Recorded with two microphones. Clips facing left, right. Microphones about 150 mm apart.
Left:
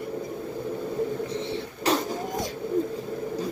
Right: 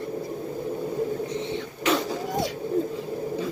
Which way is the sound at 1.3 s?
35° left (ahead or behind).